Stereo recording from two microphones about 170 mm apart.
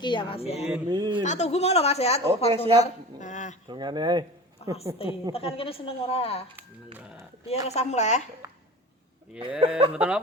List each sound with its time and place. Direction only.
0.0 s speech: 30° left (ahead or behind)
0.9 s speech: 25° right (ahead or behind)
1.2 s a woman's voice: 45° left (ahead or behind)
3.7 s speech: 25° right (ahead or behind)
5.3 s speech: 35° left (ahead or behind)
6.6 s a sound: 5° right (ahead or behind)
7.7 s speech: 40° left (ahead or behind)
8.4 s cough: 15° right (ahead or behind)
9.6 s speech: 35° right (ahead or behind)
9.9 s music: 5° right (ahead or behind)